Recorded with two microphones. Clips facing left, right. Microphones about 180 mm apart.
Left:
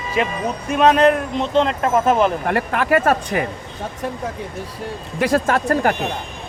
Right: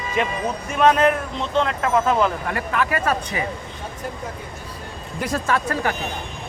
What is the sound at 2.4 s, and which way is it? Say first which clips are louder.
Speech: left 4 dB; 55° left (ahead or behind).